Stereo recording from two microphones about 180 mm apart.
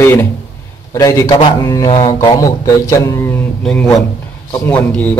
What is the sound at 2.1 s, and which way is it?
Speech, 20° left (ahead or behind).